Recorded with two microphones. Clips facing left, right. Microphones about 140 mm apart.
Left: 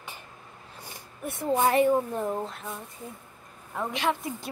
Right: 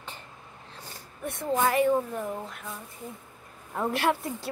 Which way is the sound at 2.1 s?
25° left (ahead or behind).